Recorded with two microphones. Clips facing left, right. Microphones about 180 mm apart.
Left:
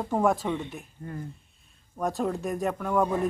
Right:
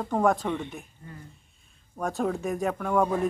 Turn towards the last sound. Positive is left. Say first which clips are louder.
# right 1 dB
turn(degrees=0)  # may be behind; listen again after turning